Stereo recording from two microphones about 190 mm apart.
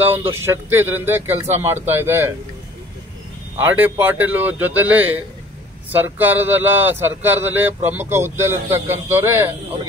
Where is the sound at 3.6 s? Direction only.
10° right (ahead or behind).